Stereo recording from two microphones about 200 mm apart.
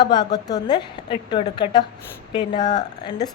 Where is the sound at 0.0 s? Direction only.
20° left (ahead or behind).